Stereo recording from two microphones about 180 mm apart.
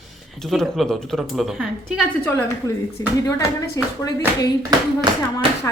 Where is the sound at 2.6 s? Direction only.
20° left (ahead or behind).